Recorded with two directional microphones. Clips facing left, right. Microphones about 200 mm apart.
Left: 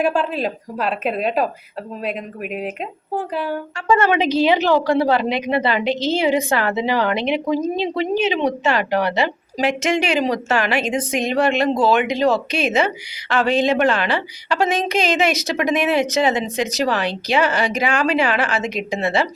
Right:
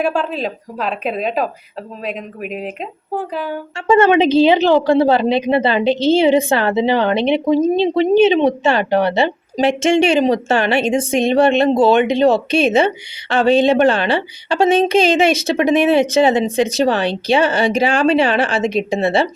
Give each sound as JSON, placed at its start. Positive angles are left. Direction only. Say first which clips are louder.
{"t": 0.0, "sound": "a woman's voice", "louder": "right 1 dB", "side_deg": 5}
{"t": 3.8, "sound": "a woman's voice", "louder": "right 6 dB", "side_deg": -25}